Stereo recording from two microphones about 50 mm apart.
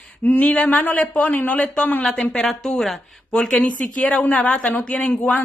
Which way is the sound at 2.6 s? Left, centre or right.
Centre.